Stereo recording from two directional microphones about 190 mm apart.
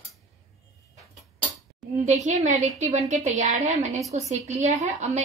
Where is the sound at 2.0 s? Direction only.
35° right (ahead or behind).